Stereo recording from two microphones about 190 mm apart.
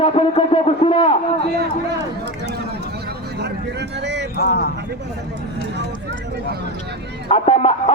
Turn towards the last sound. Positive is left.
turn(degrees=30)  # may be behind; listen again after turning